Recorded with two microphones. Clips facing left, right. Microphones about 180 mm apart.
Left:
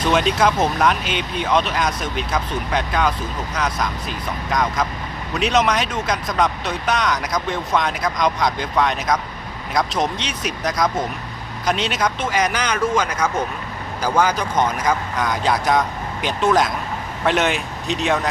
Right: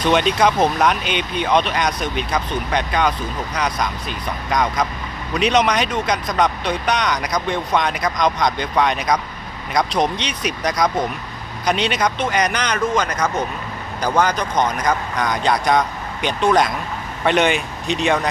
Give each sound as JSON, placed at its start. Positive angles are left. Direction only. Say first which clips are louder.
{"t": 0.0, "sound": "speech", "louder": "right 1 dB", "side_deg": 0}